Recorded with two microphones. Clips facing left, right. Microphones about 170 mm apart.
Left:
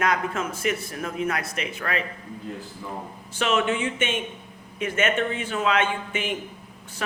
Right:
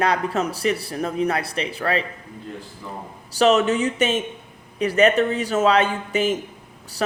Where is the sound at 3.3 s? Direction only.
40° right (ahead or behind).